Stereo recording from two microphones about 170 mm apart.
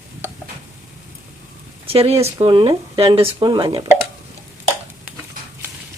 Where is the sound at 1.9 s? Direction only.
35° right (ahead or behind).